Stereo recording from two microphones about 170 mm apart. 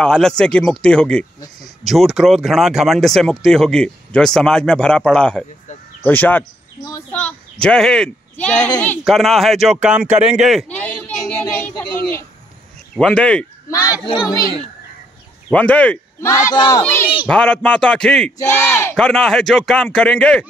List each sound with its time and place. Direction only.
0.0 s speech: 5° left (ahead or behind)
7.1 s a sound: 5° left (ahead or behind)
7.6 s speech: 5° left (ahead or behind)
10.3 s a sound: centre (ahead or behind)
12.9 s speech: 5° left (ahead or behind)
14.0 s speech: 25° left (ahead or behind)
15.5 s speech: 10° left (ahead or behind)